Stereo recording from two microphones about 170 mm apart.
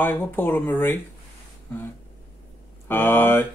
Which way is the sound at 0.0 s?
10° left (ahead or behind).